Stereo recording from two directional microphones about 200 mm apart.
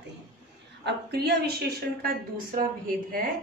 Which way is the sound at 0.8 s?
55° right (ahead or behind).